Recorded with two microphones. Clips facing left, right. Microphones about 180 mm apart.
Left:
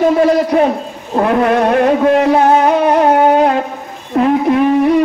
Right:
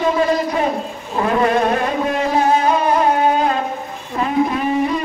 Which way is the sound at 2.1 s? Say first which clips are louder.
Left 7 dB; 70° left (ahead or behind).